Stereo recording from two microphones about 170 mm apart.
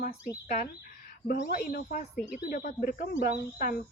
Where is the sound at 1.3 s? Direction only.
60° left (ahead or behind).